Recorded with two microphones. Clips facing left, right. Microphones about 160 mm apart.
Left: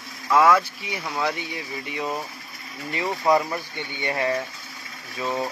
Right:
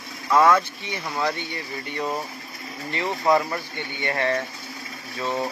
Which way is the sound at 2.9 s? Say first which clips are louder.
Even; 15° left (ahead or behind).